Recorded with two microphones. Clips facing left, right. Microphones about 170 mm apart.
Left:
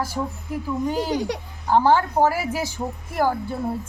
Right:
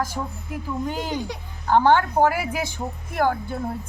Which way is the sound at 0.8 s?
35° left (ahead or behind).